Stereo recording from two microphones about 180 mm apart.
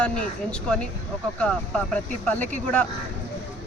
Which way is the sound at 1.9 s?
10° left (ahead or behind).